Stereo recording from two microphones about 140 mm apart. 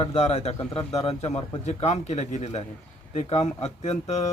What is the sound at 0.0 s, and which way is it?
A man's voice, 50° left (ahead or behind).